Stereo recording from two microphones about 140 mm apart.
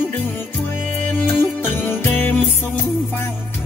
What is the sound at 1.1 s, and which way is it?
Music, 15° left (ahead or behind).